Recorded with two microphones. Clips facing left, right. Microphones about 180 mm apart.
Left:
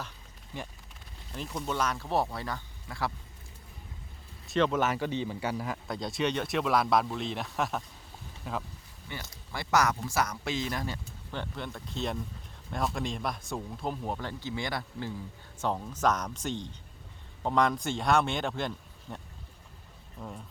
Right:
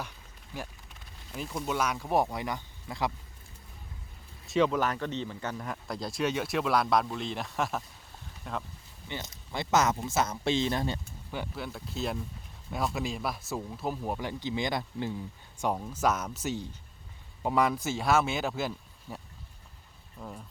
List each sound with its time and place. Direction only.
1.4 s speech: 5° right (ahead or behind)
4.4 s speech: centre (ahead or behind)
9.0 s speech: 20° right (ahead or behind)
11.3 s speech: 5° right (ahead or behind)